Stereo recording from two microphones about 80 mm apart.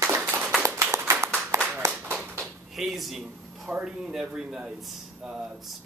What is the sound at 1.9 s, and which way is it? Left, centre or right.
Clapping, centre.